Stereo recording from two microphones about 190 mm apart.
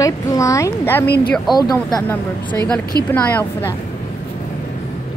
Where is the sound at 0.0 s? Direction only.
15° left (ahead or behind).